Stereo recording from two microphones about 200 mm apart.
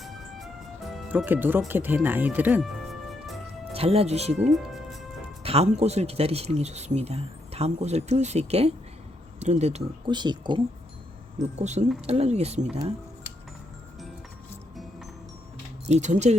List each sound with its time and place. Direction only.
0.0 s music: centre (ahead or behind)
1.0 s speech: 10° right (ahead or behind)
3.7 s speech: 30° right (ahead or behind)
4.5 s music: centre (ahead or behind)
5.4 s speech: 30° right (ahead or behind)
11.6 s speech: 35° right (ahead or behind)
15.9 s speech: 35° right (ahead or behind)